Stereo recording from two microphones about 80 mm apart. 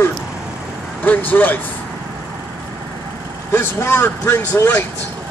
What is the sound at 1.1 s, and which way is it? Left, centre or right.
Speech, left.